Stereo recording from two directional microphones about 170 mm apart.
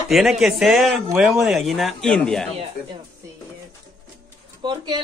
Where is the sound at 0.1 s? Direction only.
Centre (ahead or behind).